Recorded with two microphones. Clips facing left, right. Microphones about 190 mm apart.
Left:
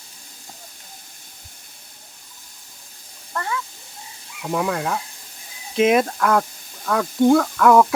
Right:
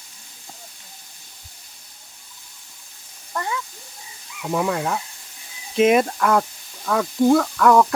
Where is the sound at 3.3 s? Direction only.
20° right (ahead or behind).